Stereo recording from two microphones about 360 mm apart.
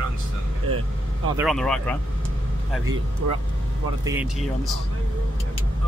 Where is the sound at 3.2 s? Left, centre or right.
Right.